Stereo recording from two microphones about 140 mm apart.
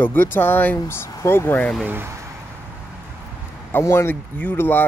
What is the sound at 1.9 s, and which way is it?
Speech, 15° right (ahead or behind).